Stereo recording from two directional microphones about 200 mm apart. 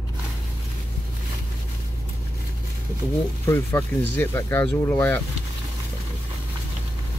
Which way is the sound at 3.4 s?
10° left (ahead or behind).